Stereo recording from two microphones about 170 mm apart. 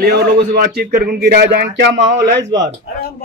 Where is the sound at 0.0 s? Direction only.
70° right (ahead or behind); by 2.0 s 85° right.